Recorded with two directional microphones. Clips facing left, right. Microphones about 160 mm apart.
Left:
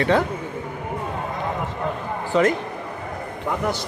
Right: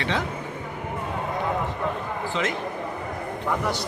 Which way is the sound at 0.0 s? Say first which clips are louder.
Left 8 dB; 50° left (ahead or behind).